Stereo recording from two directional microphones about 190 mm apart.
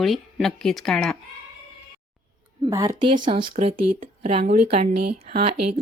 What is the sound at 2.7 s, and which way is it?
Speech, 20° right (ahead or behind).